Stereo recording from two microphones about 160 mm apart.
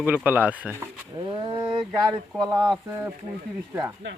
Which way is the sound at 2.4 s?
25° right (ahead or behind).